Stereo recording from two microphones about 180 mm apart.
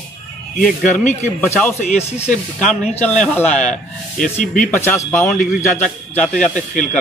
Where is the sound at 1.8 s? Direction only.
40° left (ahead or behind).